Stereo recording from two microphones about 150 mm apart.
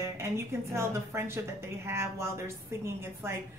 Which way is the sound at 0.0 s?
15° right (ahead or behind).